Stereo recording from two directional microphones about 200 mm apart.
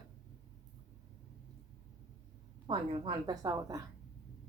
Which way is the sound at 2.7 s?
25° right (ahead or behind).